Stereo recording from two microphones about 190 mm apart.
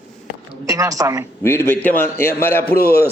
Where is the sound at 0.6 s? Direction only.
15° right (ahead or behind).